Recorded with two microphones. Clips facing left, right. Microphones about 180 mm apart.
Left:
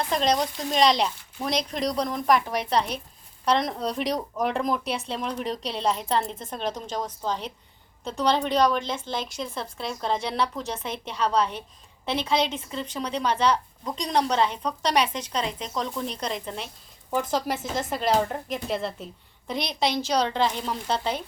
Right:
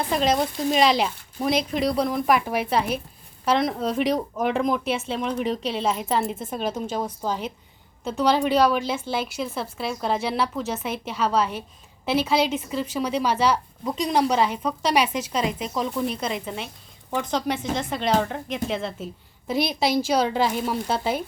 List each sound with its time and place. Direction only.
0.1 s a woman's voice: 5° right (ahead or behind)